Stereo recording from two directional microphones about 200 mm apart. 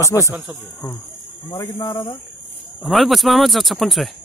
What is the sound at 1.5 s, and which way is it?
Speech, 20° left (ahead or behind).